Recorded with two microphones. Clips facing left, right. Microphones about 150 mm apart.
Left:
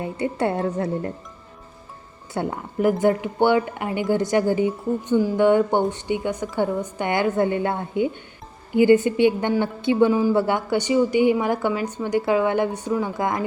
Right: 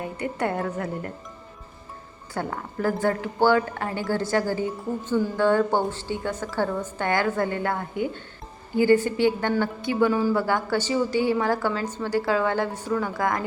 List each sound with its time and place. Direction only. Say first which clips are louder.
0.0 s a woman's voice: left 4 dB; 25° left (ahead or behind)
2.3 s a woman's voice: left 4 dB; 20° left (ahead or behind)